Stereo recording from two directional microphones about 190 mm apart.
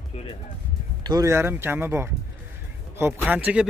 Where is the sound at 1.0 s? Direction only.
20° right (ahead or behind).